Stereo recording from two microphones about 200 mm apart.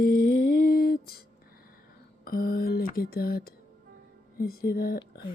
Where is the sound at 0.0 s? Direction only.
45° left (ahead or behind).